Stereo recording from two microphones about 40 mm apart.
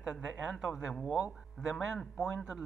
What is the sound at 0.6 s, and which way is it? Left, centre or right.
Speech, centre.